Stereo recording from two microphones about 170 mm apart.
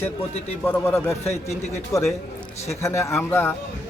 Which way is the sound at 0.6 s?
10° left (ahead or behind).